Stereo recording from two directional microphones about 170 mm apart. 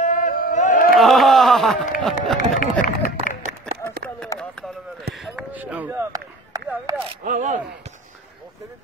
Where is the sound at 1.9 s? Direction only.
Centre (ahead or behind).